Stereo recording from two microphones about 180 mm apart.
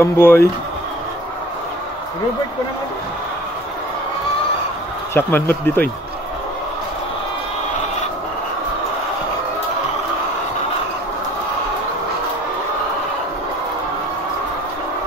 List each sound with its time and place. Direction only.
0.0 s speech: 15° left (ahead or behind)
5.1 s speech: 10° left (ahead or behind)